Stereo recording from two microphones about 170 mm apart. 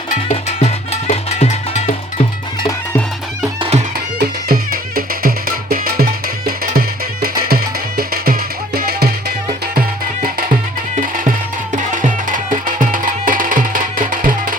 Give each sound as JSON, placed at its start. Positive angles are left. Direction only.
{"t": 0.3, "sound": "music", "side_deg": 40}
{"t": 3.6, "sound": "music", "side_deg": -40}
{"t": 4.2, "sound": "music", "side_deg": -60}
{"t": 11.7, "sound": "music", "side_deg": -50}